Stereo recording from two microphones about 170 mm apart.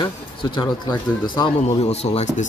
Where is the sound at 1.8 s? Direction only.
35° left (ahead or behind).